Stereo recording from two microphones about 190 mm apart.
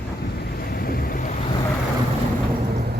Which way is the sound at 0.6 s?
50° left (ahead or behind).